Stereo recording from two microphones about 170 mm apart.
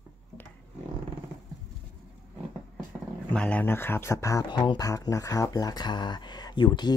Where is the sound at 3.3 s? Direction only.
10° left (ahead or behind); by 6.9 s 25° left (ahead or behind).